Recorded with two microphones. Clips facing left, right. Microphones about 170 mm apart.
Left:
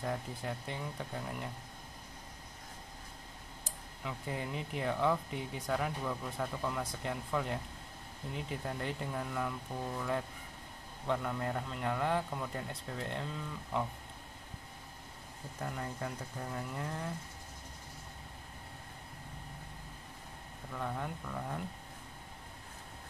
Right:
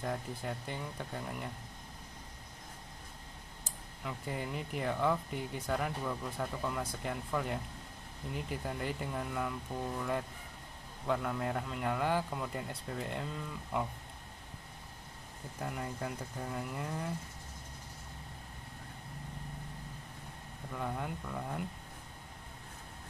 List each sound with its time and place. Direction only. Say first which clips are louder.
0.0 s speech: even; centre (ahead or behind)
4.0 s speech: even; centre (ahead or behind)
15.6 s speech: right 1 dB; 5° right (ahead or behind)
20.7 s speech: right 1 dB; 5° right (ahead or behind)